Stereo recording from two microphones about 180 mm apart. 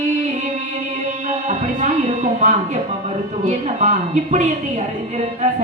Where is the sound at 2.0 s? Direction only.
40° right (ahead or behind).